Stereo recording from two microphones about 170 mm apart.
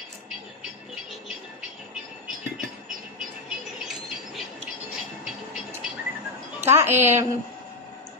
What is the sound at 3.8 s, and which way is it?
Train, centre (ahead or behind).